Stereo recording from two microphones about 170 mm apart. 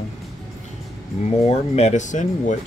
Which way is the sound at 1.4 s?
40° left (ahead or behind).